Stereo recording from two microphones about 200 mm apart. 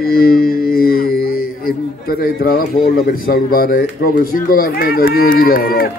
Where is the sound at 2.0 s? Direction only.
50° left (ahead or behind).